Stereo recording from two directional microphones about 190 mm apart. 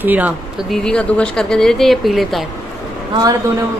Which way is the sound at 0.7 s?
5° left (ahead or behind).